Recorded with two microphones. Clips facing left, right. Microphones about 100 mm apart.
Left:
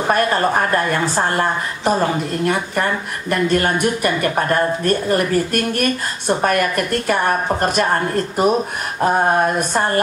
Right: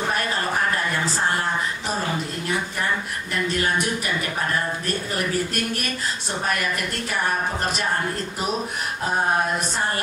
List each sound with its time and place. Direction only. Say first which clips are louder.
0.1 s a woman's voice: left 8 dB; 50° left (ahead or behind)